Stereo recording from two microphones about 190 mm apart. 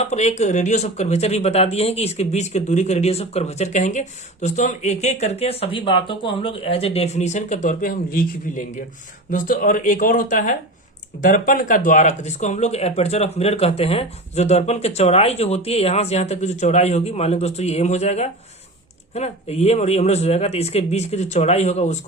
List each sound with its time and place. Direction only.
0.0 s speech: 35° left (ahead or behind)